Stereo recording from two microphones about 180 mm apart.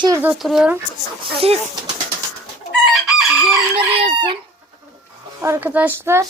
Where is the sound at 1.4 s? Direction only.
35° right (ahead or behind).